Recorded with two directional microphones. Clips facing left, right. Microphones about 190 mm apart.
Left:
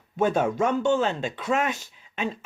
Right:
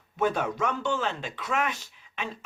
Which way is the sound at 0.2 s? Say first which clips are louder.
Left 4 dB; 25° left (ahead or behind).